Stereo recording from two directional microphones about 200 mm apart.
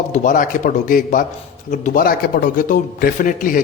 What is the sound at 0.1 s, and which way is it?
A man's voice, 40° left (ahead or behind).